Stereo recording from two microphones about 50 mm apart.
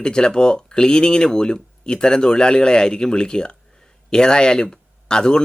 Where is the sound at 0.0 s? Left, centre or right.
Centre.